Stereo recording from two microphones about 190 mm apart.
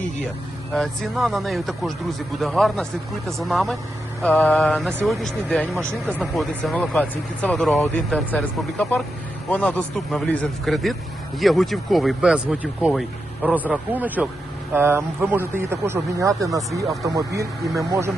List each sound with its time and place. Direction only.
0.7 s speech: centre (ahead or behind); by 18.1 s 15° right (ahead or behind)